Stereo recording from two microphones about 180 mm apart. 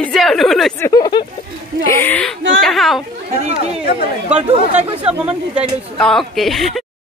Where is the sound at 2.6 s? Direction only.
Centre (ahead or behind).